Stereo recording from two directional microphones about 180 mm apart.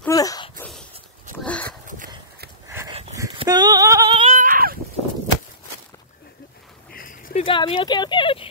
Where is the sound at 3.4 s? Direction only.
20° right (ahead or behind).